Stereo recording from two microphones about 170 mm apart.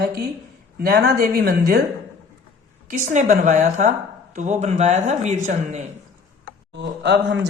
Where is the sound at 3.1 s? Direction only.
45° right (ahead or behind).